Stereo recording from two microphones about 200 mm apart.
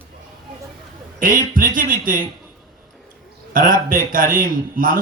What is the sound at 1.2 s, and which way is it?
A man's voice, 45° right (ahead or behind).